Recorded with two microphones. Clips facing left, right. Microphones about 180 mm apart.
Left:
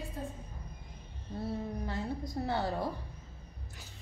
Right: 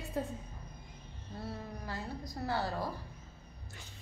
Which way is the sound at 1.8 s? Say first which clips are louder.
Left 5 dB; 25° left (ahead or behind).